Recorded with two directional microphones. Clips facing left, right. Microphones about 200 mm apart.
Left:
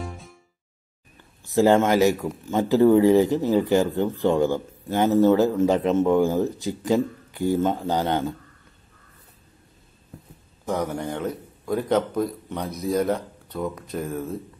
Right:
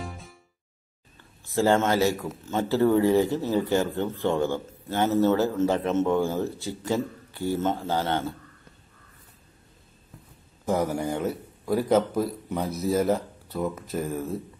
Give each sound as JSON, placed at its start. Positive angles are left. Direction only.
{"t": 0.0, "sound": "music", "side_deg": 0}
{"t": 1.1, "sound": "speech", "side_deg": 15}
{"t": 10.7, "sound": "a man's voice", "side_deg": -10}